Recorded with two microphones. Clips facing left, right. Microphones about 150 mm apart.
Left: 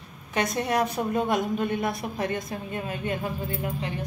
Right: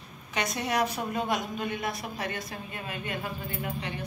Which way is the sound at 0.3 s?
50° left (ahead or behind).